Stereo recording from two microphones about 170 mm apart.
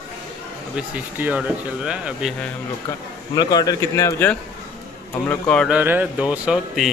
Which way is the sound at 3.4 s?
25° left (ahead or behind).